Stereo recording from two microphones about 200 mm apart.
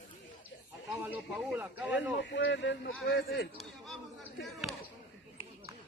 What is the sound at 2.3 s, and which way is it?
A man's voice, 60° left (ahead or behind).